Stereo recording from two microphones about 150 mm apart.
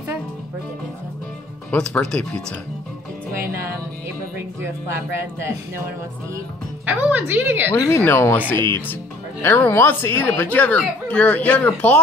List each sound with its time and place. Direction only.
1.7 s speech: 5° left (ahead or behind)
3.3 s music: 15° right (ahead or behind)
4.6 s a woman's voice: 15° right (ahead or behind)
6.9 s a woman's voice: 10° right (ahead or behind)
7.7 s speech: 25° left (ahead or behind)